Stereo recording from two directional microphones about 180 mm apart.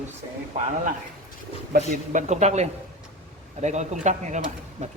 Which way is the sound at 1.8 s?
40° right (ahead or behind).